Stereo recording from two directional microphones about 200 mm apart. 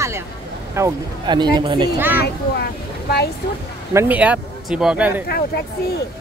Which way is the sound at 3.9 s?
10° right (ahead or behind).